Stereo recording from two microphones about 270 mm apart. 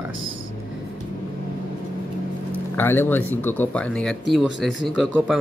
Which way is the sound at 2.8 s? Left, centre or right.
Centre.